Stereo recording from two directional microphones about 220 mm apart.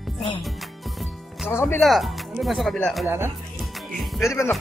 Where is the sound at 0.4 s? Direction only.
Centre (ahead or behind).